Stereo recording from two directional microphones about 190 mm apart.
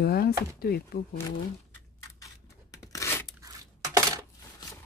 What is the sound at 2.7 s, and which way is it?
Tearing, 15° left (ahead or behind).